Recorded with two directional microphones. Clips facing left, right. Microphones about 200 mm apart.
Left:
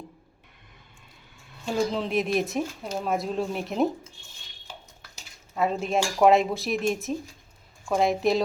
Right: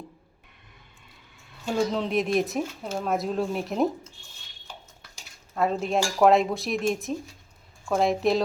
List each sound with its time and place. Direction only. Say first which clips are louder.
1.6 s speech: right 1 dB; centre (ahead or behind)
5.1 s cutlery: right 1 dB; centre (ahead or behind)
7.9 s speech: even; centre (ahead or behind)